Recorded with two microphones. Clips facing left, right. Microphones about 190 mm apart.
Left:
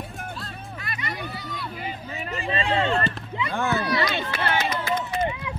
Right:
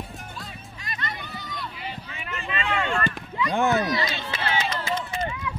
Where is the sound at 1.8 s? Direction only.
45° left (ahead or behind); by 3.2 s 30° left (ahead or behind).